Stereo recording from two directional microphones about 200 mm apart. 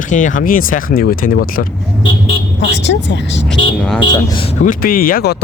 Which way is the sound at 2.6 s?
65° left (ahead or behind).